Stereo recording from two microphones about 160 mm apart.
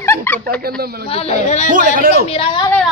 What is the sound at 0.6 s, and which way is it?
Speech, 75° right (ahead or behind).